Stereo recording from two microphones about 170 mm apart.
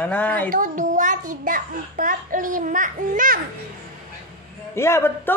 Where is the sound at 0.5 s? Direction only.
50° right (ahead or behind).